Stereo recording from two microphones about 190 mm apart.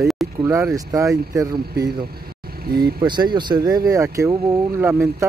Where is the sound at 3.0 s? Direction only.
25° right (ahead or behind).